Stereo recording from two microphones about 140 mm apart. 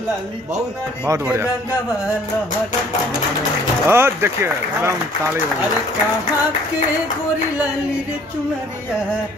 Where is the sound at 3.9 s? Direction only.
15° right (ahead or behind).